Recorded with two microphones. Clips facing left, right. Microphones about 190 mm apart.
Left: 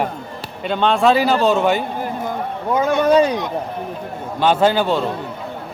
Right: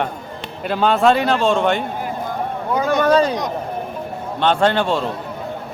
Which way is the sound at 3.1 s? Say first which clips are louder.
Left 2 dB; 15° left (ahead or behind).